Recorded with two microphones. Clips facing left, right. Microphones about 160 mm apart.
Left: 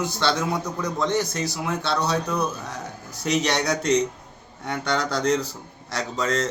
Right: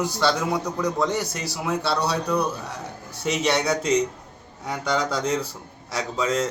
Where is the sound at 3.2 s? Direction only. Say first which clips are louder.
Even; 5° right (ahead or behind).